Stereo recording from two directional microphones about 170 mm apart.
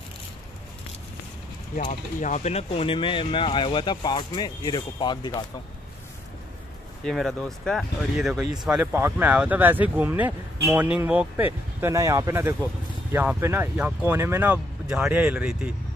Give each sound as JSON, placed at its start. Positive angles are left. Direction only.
{"t": 1.8, "sound": "speech", "side_deg": 50}
{"t": 7.1, "sound": "speech", "side_deg": 0}